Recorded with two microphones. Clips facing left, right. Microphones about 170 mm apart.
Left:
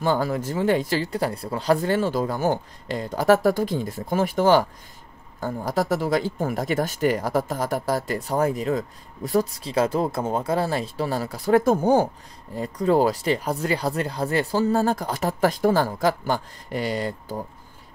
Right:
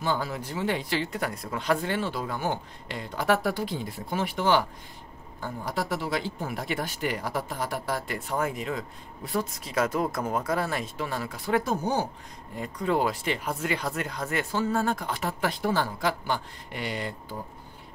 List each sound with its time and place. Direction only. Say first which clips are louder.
0.0 s speech: left 6 dB; 50° left (ahead or behind)
12.5 s speech: left 7 dB; 35° left (ahead or behind)